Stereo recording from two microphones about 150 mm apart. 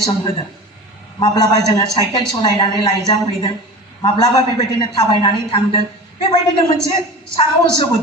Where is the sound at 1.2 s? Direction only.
25° left (ahead or behind).